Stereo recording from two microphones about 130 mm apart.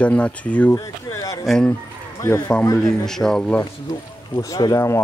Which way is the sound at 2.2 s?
25° left (ahead or behind).